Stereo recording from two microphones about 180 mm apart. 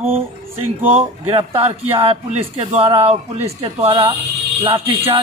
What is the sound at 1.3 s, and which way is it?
Speech, 30° right (ahead or behind).